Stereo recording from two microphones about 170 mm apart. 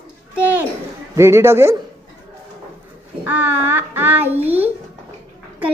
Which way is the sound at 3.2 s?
10° right (ahead or behind).